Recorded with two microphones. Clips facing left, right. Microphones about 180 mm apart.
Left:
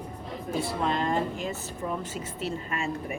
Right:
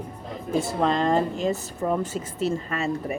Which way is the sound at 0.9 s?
40° right (ahead or behind).